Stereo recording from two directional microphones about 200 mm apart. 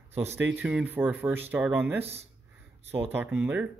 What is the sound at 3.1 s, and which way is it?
Speech, 10° right (ahead or behind).